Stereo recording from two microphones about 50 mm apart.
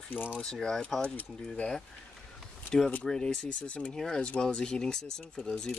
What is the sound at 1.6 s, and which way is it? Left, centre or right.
Speech, left.